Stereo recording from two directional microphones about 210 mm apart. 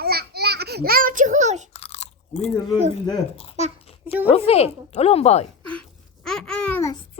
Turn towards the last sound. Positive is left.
turn(degrees=10)  # may be behind; listen again after turning